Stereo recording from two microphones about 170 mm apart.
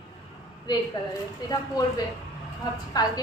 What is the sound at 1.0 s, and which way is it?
Speech, 25° left (ahead or behind).